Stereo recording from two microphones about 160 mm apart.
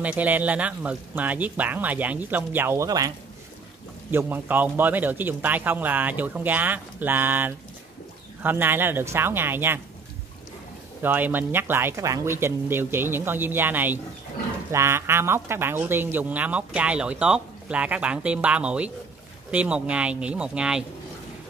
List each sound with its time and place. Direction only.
0.0 s speech: 10° right (ahead or behind)
4.1 s speech: 15° right (ahead or behind)
11.0 s speech: 10° right (ahead or behind)